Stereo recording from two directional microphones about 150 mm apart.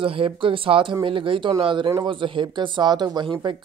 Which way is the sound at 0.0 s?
35° right (ahead or behind).